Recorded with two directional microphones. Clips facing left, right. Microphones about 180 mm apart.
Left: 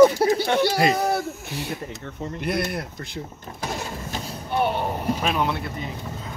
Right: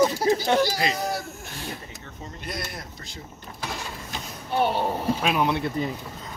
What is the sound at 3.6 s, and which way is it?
Vehicle, 40° left (ahead or behind).